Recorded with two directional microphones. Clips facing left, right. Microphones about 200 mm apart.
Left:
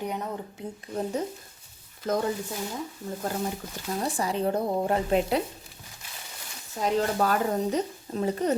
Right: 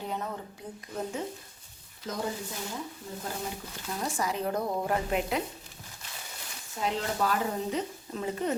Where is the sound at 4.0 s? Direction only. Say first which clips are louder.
Left 4 dB; 30° left (ahead or behind).